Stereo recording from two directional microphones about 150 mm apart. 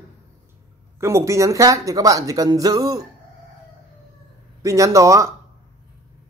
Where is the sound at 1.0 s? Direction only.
20° right (ahead or behind).